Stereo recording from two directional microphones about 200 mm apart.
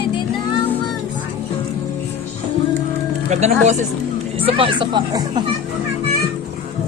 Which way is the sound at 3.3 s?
35° right (ahead or behind).